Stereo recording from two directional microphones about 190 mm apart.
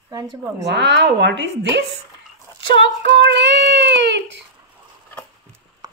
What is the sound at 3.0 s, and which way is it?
Speech, 65° right (ahead or behind).